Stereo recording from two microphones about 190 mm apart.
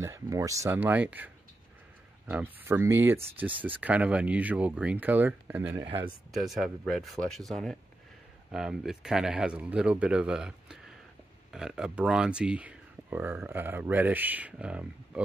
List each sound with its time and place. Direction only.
0.0 s speech: 15° right (ahead or behind)
5.8 s speech: 30° right (ahead or behind)
6.3 s speech: centre (ahead or behind)